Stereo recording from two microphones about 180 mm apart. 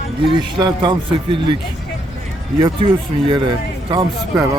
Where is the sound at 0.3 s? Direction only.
25° right (ahead or behind).